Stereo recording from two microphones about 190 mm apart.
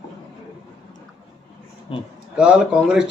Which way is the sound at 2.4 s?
5° right (ahead or behind).